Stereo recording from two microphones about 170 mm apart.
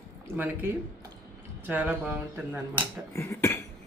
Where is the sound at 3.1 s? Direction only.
15° left (ahead or behind).